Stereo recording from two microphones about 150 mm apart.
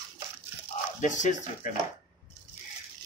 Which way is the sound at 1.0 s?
55° left (ahead or behind).